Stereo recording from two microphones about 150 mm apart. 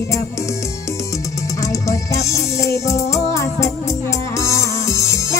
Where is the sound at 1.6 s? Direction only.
20° left (ahead or behind).